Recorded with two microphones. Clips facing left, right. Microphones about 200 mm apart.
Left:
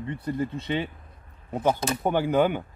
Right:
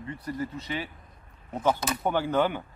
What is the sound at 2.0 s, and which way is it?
Speech, 15° left (ahead or behind).